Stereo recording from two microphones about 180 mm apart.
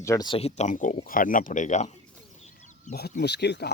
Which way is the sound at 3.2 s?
70° left (ahead or behind).